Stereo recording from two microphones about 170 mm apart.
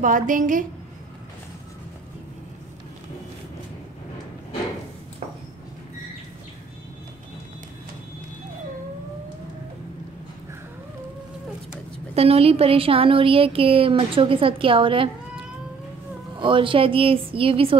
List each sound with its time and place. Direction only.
0.0 s a woman's voice: 50° right (ahead or behind)
12.2 s a woman's voice: 35° right (ahead or behind)